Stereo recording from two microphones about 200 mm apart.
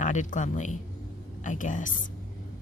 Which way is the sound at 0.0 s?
40° left (ahead or behind).